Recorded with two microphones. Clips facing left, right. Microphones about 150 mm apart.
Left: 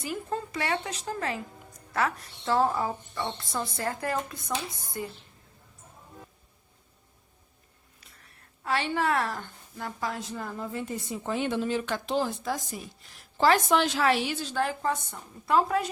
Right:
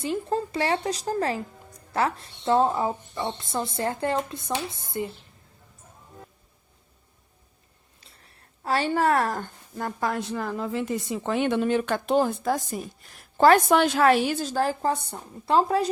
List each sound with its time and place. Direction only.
0.0 s a woman's voice: 30° right (ahead or behind)
8.0 s a woman's voice: 30° right (ahead or behind)